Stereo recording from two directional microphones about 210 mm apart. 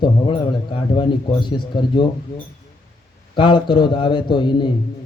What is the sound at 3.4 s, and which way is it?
Speech, 20° left (ahead or behind).